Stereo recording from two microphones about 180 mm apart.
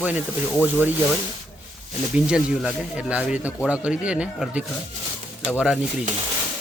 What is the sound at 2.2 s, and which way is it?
Speech, 5° right (ahead or behind).